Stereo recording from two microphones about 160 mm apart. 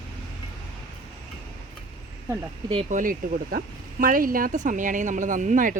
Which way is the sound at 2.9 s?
55° right (ahead or behind).